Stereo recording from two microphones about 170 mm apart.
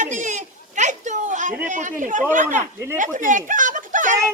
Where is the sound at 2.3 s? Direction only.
50° right (ahead or behind).